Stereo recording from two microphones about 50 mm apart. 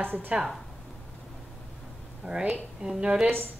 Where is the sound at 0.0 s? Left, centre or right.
Right.